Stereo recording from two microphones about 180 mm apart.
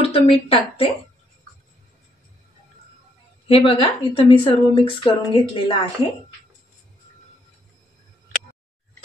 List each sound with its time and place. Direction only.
0.0 s a woman's voice: 30° left (ahead or behind)
3.4 s a woman's voice: 30° left (ahead or behind)